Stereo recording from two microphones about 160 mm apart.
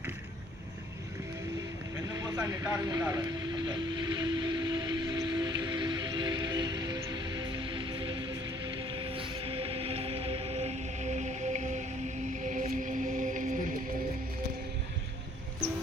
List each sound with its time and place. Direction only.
2.0 s vehicle: 20° right (ahead or behind); by 13.6 s 55° right (ahead or behind)